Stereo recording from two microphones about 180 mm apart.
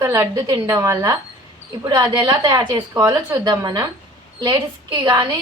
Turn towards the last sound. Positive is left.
turn(degrees=-25)  # may be behind; listen again after turning